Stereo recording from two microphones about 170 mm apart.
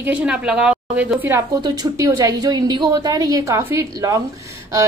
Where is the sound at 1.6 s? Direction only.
20° right (ahead or behind).